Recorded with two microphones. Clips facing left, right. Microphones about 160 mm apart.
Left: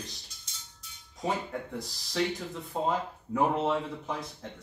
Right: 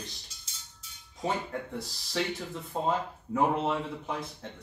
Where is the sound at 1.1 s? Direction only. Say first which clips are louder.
Even; centre (ahead or behind).